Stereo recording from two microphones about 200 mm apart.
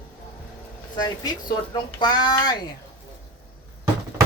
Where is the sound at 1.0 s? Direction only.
20° left (ahead or behind).